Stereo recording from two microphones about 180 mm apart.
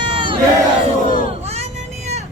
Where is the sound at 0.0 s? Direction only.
25° right (ahead or behind).